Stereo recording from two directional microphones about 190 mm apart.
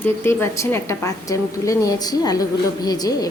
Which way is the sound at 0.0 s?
15° left (ahead or behind).